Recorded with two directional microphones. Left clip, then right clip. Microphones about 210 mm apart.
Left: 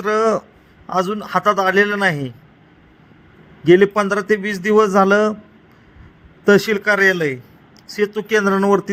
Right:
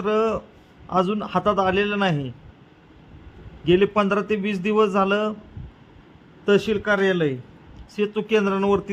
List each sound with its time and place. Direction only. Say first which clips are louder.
0.0 s a man's voice: left 5 dB; 15° left (ahead or behind)
3.6 s a man's voice: left 6 dB; 15° left (ahead or behind)
6.4 s a man's voice: left 6 dB; 20° left (ahead or behind)